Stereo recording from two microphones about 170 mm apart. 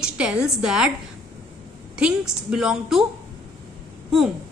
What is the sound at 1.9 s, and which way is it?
A woman's voice, 5° right (ahead or behind).